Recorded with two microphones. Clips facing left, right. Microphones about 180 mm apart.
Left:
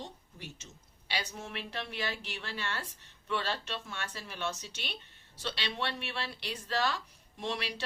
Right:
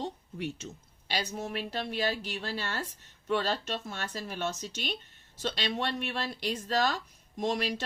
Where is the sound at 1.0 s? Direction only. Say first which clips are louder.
Right 5 dB; 40° right (ahead or behind).